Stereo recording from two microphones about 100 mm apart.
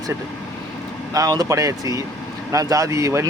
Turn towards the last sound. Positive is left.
turn(degrees=-30)  # may be behind; listen again after turning